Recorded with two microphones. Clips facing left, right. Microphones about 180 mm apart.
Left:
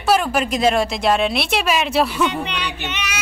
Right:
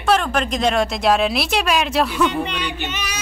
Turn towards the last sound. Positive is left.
turn(degrees=-45)  # may be behind; listen again after turning